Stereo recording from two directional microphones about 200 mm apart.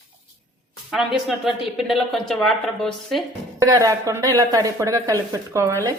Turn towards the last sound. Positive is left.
turn(degrees=-15)  # may be behind; listen again after turning